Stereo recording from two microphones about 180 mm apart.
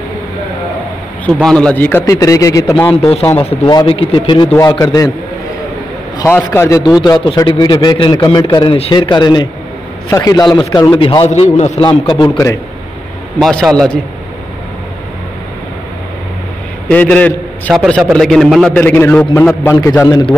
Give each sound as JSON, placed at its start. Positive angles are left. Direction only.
{"t": 1.2, "sound": "a man's voice", "side_deg": 5}
{"t": 3.0, "sound": "a man's voice", "side_deg": 30}
{"t": 4.5, "sound": "a man's voice", "side_deg": 20}
{"t": 6.1, "sound": "a man's voice", "side_deg": 15}
{"t": 7.0, "sound": "a man's voice", "side_deg": 25}
{"t": 11.2, "sound": "a man's voice", "side_deg": 40}
{"t": 11.8, "sound": "a man's voice", "side_deg": 25}
{"t": 13.4, "sound": "a man's voice", "side_deg": 5}
{"t": 16.8, "sound": "a man's voice", "side_deg": 10}